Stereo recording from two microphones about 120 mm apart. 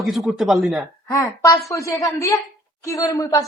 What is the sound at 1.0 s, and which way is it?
A woman's voice, 25° left (ahead or behind).